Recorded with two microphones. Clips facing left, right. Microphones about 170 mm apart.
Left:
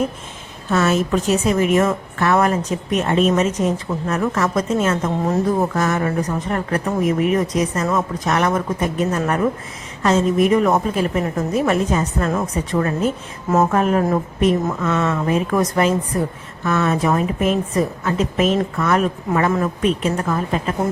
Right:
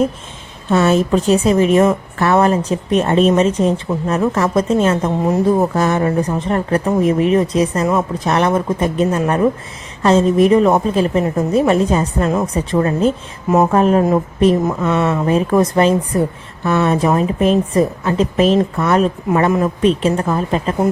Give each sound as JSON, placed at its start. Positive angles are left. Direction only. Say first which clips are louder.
{"t": 0.7, "sound": "a woman's voice", "louder": "right 4 dB", "side_deg": -30}
{"t": 5.2, "sound": "speech", "louder": "right 5 dB", "side_deg": -15}
{"t": 5.7, "sound": "a woman's voice", "louder": "right 4 dB", "side_deg": -30}